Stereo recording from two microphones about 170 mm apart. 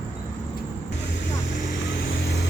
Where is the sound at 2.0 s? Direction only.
75° left (ahead or behind).